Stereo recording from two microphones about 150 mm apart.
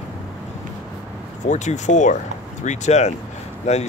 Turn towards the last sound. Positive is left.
turn(degrees=50)  # may be behind; listen again after turning